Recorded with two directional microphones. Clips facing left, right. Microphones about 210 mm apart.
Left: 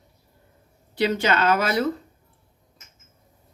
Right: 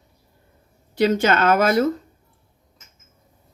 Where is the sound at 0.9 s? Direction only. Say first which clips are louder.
Right 4 dB; 45° right (ahead or behind).